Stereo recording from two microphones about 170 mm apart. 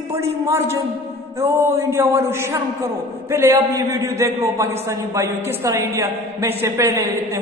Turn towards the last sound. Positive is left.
turn(degrees=-15)  # may be behind; listen again after turning